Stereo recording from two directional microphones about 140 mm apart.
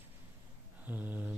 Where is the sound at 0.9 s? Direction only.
10° right (ahead or behind).